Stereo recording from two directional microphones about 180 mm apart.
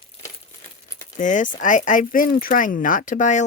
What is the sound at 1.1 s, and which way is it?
Speech, 45° left (ahead or behind).